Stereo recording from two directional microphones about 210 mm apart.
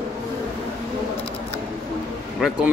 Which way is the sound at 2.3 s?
Centre (ahead or behind).